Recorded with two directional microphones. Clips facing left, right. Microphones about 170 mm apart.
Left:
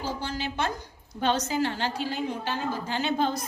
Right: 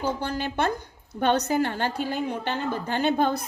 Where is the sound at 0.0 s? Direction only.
55° right (ahead or behind).